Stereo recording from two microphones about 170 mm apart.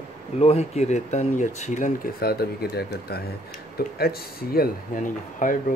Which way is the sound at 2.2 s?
65° left (ahead or behind).